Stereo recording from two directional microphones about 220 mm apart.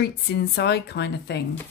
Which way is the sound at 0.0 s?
50° left (ahead or behind).